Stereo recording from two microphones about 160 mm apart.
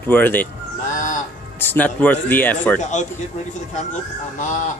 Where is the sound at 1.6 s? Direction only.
10° left (ahead or behind).